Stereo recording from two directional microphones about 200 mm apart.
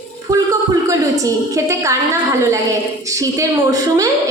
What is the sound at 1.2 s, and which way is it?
Speech, 15° right (ahead or behind).